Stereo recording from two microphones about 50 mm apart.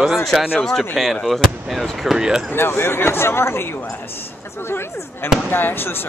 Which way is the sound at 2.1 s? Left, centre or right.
Centre.